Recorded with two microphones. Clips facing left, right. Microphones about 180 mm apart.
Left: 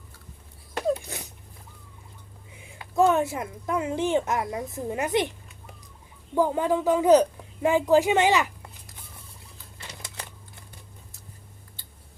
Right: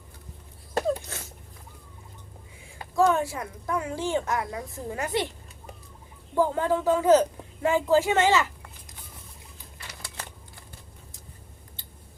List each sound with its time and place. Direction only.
1.0 s dog: 15° left (ahead or behind)
2.9 s a woman's voice: 20° left (ahead or behind)
6.3 s a woman's voice: 15° left (ahead or behind)
9.7 s typewriter: 20° left (ahead or behind)